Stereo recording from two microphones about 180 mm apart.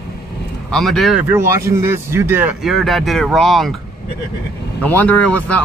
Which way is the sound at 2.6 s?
Centre (ahead or behind).